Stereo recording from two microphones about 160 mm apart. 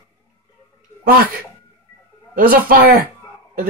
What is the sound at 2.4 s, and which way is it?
Speech, 65° right (ahead or behind).